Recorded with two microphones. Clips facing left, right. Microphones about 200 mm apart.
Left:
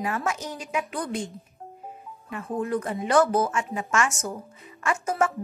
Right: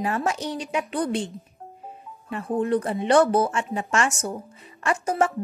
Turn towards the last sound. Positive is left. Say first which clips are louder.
# right 2 dB
turn(degrees=-30)  # may be behind; listen again after turning